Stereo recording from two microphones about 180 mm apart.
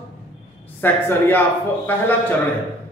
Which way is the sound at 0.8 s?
10° left (ahead or behind).